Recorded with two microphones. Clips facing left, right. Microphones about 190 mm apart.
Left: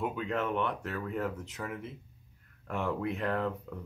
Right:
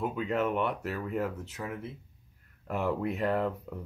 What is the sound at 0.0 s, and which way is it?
Speech, centre (ahead or behind).